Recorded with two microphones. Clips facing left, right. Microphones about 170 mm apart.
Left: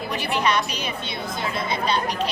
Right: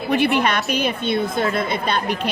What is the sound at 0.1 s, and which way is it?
A woman's voice, 55° right (ahead or behind).